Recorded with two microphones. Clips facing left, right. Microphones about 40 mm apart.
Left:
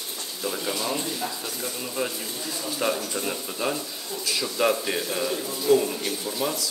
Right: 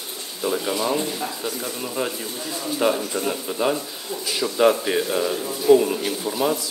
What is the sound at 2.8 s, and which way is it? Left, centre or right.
A man's voice, centre.